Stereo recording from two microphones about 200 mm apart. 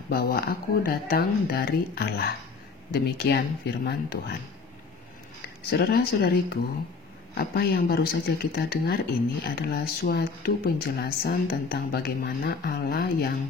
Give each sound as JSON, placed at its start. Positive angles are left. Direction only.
{"t": 0.1, "sound": "speech", "side_deg": 50}
{"t": 5.7, "sound": "speech", "side_deg": 55}